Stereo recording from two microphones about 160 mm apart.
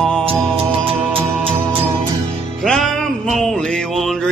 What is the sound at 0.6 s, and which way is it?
Music, 35° right (ahead or behind).